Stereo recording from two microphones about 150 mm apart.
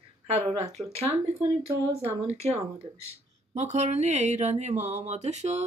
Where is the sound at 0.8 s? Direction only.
15° right (ahead or behind).